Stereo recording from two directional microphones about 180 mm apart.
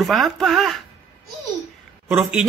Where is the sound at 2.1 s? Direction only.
5° right (ahead or behind).